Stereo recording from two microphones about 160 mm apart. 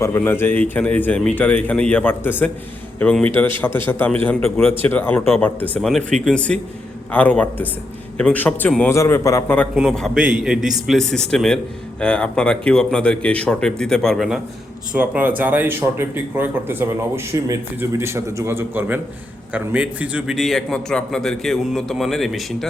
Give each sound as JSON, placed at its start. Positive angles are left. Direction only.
{"t": 0.0, "sound": "a man's voice", "side_deg": 15}
{"t": 9.7, "sound": "speech", "side_deg": 0}